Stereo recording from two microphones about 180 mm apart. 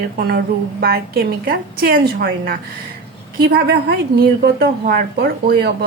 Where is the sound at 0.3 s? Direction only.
60° right (ahead or behind).